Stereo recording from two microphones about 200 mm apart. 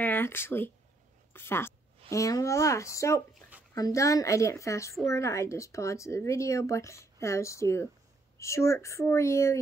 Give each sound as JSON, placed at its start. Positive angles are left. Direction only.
{"t": 0.0, "sound": "a woman's voice", "side_deg": 10}
{"t": 3.3, "sound": "a sound", "side_deg": -5}
{"t": 3.7, "sound": "speech", "side_deg": 15}